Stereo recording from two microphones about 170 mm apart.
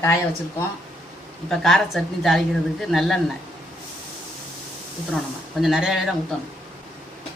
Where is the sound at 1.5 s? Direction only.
Centre (ahead or behind).